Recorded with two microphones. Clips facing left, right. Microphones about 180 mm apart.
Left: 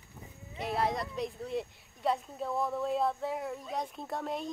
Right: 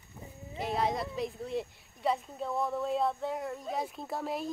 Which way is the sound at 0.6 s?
Centre (ahead or behind).